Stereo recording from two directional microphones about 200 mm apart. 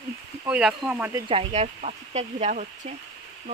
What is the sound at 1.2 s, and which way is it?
Speech, 30° right (ahead or behind).